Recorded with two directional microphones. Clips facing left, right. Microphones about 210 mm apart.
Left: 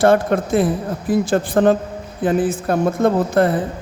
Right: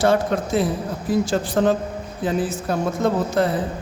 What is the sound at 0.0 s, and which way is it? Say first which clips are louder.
Speech: left 4 dB; 55° left (ahead or behind).